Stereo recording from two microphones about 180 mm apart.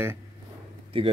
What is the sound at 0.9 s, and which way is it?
Speech, 30° right (ahead or behind).